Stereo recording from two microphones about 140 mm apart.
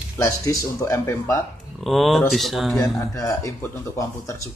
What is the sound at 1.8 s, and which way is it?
Speech, centre (ahead or behind).